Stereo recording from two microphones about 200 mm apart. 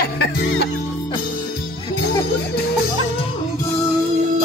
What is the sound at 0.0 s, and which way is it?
Music, 55° left (ahead or behind).